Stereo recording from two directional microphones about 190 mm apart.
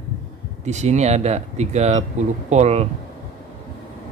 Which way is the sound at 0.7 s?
35° right (ahead or behind).